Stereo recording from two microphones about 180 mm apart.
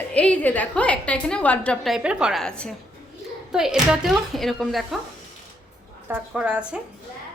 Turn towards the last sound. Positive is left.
turn(degrees=-5)  # may be behind; listen again after turning